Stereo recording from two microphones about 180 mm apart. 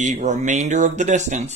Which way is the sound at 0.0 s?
45° right (ahead or behind).